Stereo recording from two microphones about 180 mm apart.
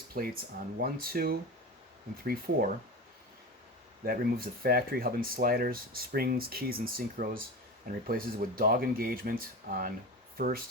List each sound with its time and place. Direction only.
0.1 s speech: 50° right (ahead or behind)
4.0 s speech: 55° right (ahead or behind)